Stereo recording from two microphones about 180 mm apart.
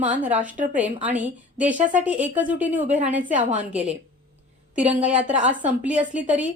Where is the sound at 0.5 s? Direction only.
45° right (ahead or behind).